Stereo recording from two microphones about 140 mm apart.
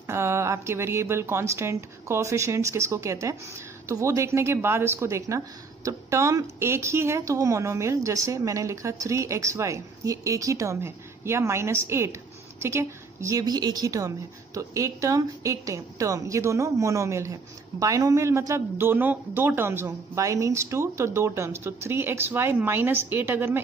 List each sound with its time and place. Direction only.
0.0 s a woman's voice: 20° right (ahead or behind)